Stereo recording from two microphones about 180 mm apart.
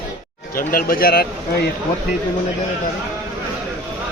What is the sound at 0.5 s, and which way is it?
A man's voice, 50° left (ahead or behind).